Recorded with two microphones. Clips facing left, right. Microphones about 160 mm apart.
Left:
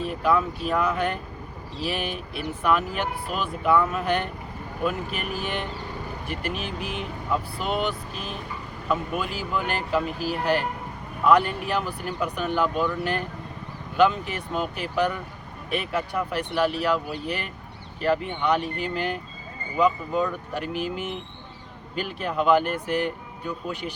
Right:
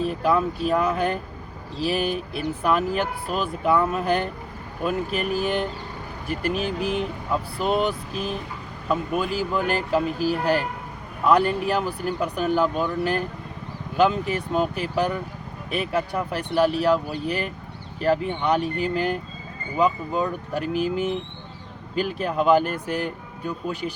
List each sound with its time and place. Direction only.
0.0 s speech: 35° right (ahead or behind)
14.3 s speech: 40° right (ahead or behind)
20.5 s speech: 40° right (ahead or behind)